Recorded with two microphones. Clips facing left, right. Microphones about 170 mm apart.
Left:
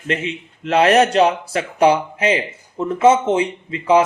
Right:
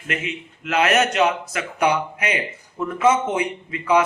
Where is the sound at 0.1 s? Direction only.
30° left (ahead or behind).